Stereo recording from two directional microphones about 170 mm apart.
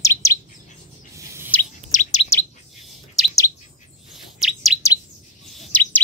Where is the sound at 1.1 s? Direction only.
15° right (ahead or behind).